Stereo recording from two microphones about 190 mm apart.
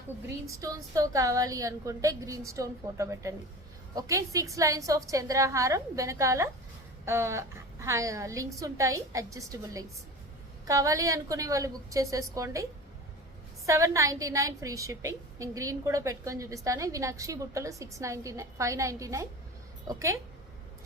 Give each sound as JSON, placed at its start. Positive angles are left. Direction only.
{"t": 0.4, "sound": "a woman's voice", "side_deg": -15}
{"t": 13.7, "sound": "a woman's voice", "side_deg": -15}